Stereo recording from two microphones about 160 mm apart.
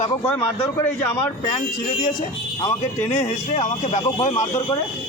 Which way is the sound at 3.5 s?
50° left (ahead or behind).